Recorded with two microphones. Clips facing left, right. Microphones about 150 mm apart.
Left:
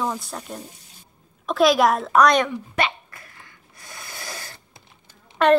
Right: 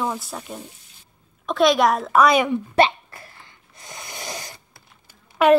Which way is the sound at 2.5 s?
30° right (ahead or behind).